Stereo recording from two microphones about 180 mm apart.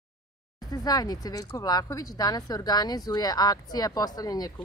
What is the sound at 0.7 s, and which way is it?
Speech, 20° left (ahead or behind).